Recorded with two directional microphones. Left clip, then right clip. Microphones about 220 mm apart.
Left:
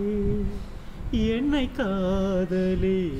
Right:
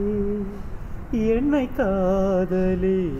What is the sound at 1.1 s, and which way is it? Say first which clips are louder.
Mantra: right 4 dB; 25° left (ahead or behind).